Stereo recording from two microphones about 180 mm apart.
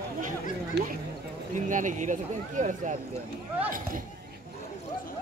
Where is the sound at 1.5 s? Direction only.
45° right (ahead or behind).